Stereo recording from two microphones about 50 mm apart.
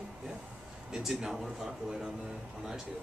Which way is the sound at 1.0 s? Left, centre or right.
Centre.